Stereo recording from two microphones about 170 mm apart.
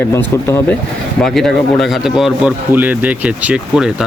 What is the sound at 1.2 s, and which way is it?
Speech, centre (ahead or behind).